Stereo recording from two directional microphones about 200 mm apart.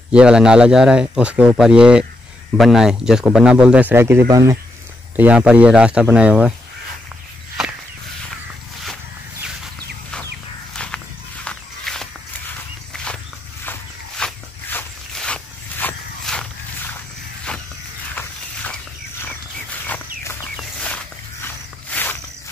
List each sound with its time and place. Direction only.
0.1 s a man's voice: 5° right (ahead or behind)
11.4 s walk: centre (ahead or behind)
12.9 s a sound: 5° left (ahead or behind)
13.7 s walk: 5° left (ahead or behind)
18.1 s walk: 5° left (ahead or behind)
20.5 s a sound: 5° left (ahead or behind)